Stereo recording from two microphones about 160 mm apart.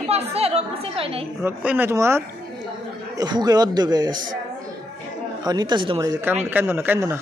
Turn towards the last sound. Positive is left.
turn(degrees=-15)  # may be behind; listen again after turning